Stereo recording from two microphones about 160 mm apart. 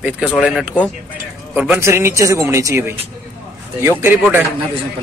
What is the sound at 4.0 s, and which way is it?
Speech, 10° right (ahead or behind).